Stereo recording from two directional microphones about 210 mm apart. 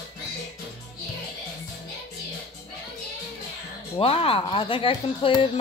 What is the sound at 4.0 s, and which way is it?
Speech, 25° left (ahead or behind).